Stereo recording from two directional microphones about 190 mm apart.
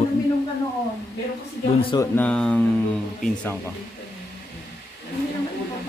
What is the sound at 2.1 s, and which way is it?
Speech, 5° left (ahead or behind).